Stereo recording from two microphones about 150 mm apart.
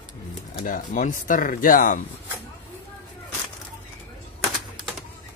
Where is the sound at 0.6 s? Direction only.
65° left (ahead or behind).